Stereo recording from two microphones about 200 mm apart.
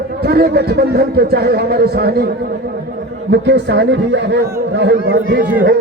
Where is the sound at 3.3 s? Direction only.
60° right (ahead or behind).